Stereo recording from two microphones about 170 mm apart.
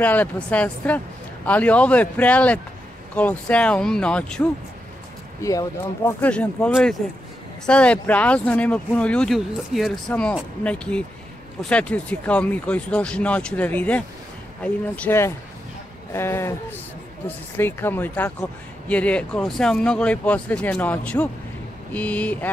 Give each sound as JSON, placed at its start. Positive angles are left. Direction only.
{"t": 0.0, "sound": "speech", "side_deg": 10}
{"t": 5.4, "sound": "speech", "side_deg": 20}
{"t": 6.2, "sound": "speech", "side_deg": 5}